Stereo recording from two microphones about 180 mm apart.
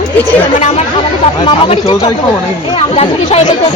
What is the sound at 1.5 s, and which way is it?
Speech, 30° left (ahead or behind).